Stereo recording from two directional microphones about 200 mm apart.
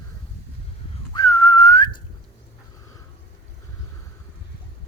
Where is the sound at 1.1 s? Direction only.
15° left (ahead or behind).